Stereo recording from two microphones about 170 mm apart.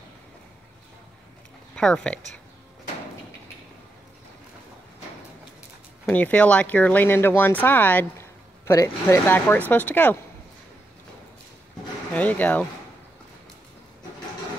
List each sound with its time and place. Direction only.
1.8 s speech: 5° left (ahead or behind)
6.0 s speech: 10° left (ahead or behind)
12.1 s speech: 10° left (ahead or behind)